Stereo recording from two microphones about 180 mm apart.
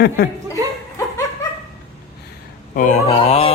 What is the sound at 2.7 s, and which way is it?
Fowl, 45° left (ahead or behind).